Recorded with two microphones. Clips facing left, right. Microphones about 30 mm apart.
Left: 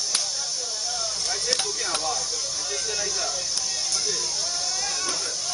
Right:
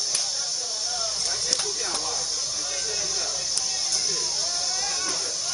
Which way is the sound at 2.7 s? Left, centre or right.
Centre.